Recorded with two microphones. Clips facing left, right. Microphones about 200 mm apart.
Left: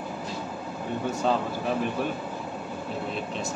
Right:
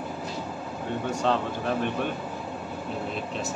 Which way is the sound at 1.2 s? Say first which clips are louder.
Even; 5° left (ahead or behind).